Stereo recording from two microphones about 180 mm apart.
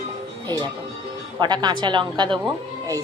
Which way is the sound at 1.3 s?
25° right (ahead or behind).